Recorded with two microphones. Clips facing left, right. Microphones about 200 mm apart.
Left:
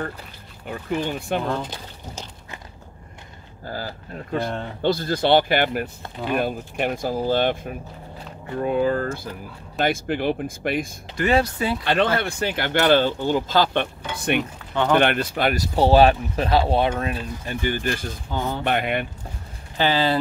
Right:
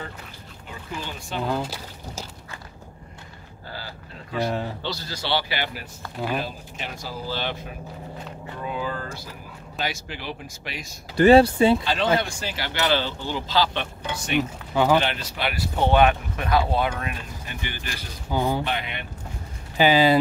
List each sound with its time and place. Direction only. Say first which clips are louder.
0.7 s speech: left 9 dB; 60° left (ahead or behind)
1.5 s speech: even; 5° right (ahead or behind)
3.6 s speech: left 7 dB; 45° left (ahead or behind)
4.4 s speech: right 2 dB; 5° right (ahead or behind)
4.8 s speech: left 10 dB; 55° left (ahead or behind)
8.6 s speech: left 9 dB; 55° left (ahead or behind)
11.1 s speech: right 7 dB; 30° right (ahead or behind)
11.8 s speech: left 2 dB; 60° left (ahead or behind)
14.7 s speech: right 1 dB; 10° right (ahead or behind)
15.0 s speech: left 5 dB; 55° left (ahead or behind)
18.3 s speech: right 3 dB; 15° right (ahead or behind)
18.6 s speech: left 6 dB; 55° left (ahead or behind)
19.8 s speech: right 3 dB; 10° right (ahead or behind)